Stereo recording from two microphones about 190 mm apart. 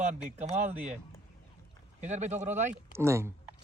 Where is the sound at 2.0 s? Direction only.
35° right (ahead or behind).